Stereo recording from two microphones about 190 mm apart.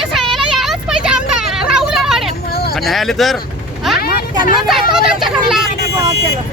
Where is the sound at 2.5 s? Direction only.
55° left (ahead or behind).